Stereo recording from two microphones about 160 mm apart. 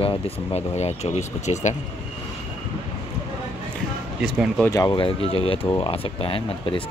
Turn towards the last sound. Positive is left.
turn(degrees=35)  # may be behind; listen again after turning